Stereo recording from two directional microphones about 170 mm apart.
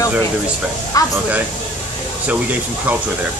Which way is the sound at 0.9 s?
20° left (ahead or behind).